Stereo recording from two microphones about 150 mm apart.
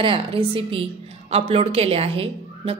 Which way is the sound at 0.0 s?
35° right (ahead or behind).